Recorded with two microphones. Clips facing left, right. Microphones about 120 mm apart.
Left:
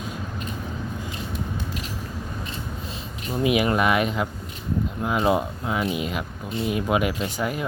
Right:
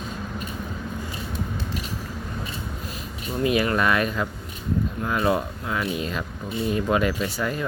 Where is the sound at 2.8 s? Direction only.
25° left (ahead or behind).